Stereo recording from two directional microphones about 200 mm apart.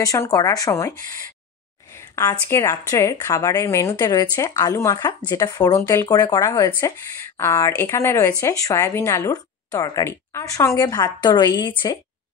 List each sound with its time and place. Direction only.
0.0 s speech: 15° left (ahead or behind)
2.0 s a sound: 15° left (ahead or behind)
2.4 s speech: 15° left (ahead or behind)